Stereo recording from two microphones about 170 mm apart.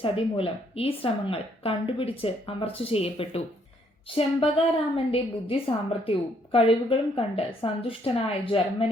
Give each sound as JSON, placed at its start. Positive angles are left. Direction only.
{"t": 0.0, "sound": "a woman's voice", "side_deg": 35}